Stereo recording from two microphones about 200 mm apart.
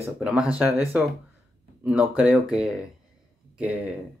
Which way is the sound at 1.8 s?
5° right (ahead or behind).